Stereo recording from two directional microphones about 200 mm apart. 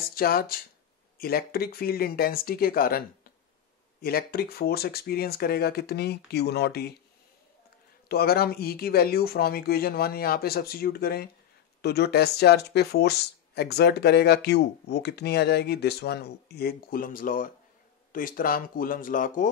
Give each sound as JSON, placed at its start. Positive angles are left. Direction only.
{"t": 0.1, "sound": "speech", "side_deg": 45}
{"t": 8.1, "sound": "speech", "side_deg": 50}